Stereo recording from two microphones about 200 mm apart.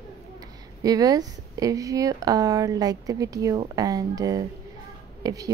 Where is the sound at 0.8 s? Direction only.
20° right (ahead or behind).